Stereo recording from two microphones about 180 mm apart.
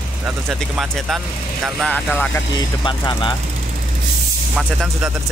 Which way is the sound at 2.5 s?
25° left (ahead or behind).